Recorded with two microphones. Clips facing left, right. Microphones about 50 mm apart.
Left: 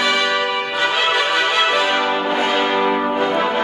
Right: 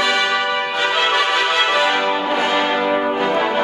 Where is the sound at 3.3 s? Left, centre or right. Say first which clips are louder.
Even; centre.